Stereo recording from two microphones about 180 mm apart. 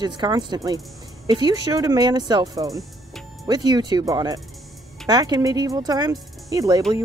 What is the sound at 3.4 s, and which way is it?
Speech, 20° right (ahead or behind).